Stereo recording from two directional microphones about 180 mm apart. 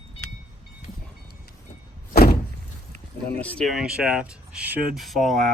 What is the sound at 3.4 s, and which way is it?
Speech, centre (ahead or behind).